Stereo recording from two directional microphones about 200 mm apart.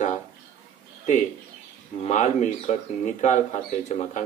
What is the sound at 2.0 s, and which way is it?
Speech, 35° left (ahead or behind).